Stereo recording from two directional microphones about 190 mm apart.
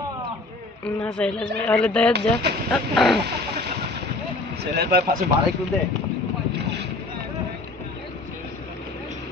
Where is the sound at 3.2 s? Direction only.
60° right (ahead or behind).